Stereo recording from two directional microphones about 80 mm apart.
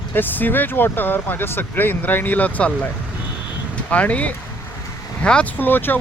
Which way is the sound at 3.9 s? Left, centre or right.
Centre.